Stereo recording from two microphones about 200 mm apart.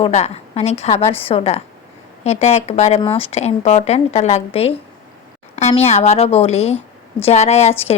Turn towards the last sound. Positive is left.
turn(degrees=30)  # may be behind; listen again after turning